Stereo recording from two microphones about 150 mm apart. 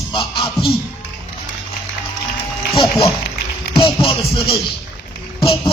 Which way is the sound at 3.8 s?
35° left (ahead or behind).